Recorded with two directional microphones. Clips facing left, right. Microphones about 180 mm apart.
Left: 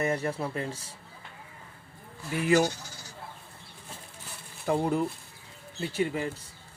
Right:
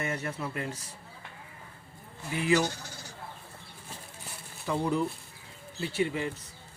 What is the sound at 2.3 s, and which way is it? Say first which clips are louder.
Speech: left 3 dB; 50° left (ahead or behind).